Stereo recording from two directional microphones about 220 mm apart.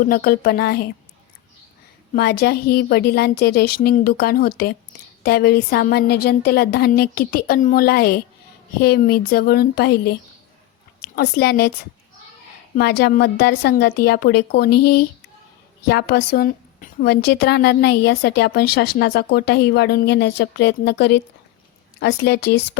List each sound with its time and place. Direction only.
0.0 s speech: 40° left (ahead or behind)
2.1 s a woman's voice: 45° left (ahead or behind)
12.7 s speech: 45° left (ahead or behind)
15.9 s speech: 50° left (ahead or behind)